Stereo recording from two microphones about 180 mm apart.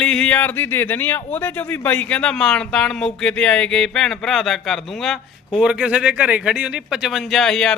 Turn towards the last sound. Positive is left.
turn(degrees=5)  # may be behind; listen again after turning